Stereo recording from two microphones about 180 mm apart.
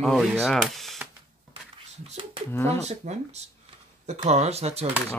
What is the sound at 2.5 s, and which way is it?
Speech, 15° left (ahead or behind).